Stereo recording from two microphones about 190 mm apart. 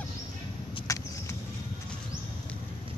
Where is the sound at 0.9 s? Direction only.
15° left (ahead or behind).